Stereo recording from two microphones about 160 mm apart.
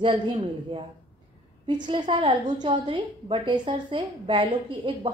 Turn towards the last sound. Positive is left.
turn(degrees=-35)  # may be behind; listen again after turning